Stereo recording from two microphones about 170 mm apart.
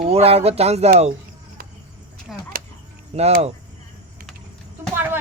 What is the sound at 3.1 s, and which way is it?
Speech, 35° right (ahead or behind).